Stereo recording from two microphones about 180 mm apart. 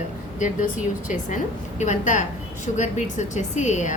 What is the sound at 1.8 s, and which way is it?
A woman's voice, 45° left (ahead or behind).